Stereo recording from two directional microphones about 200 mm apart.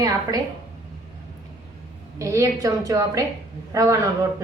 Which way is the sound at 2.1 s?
15° right (ahead or behind).